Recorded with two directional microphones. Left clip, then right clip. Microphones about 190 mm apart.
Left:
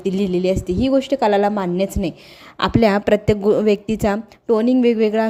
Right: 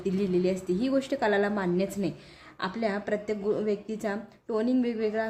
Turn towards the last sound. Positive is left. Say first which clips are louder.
# left 12 dB
turn(degrees=40)  # may be behind; listen again after turning